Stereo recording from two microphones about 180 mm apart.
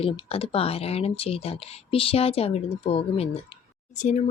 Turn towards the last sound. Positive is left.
turn(degrees=40)  # may be behind; listen again after turning